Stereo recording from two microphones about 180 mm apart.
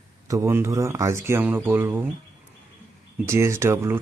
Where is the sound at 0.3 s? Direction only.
15° right (ahead or behind).